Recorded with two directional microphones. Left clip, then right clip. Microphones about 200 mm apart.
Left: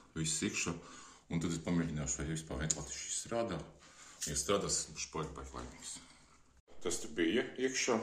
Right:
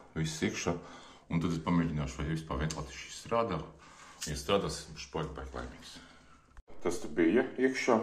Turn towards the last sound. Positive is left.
turn(degrees=0)  # may be behind; listen again after turning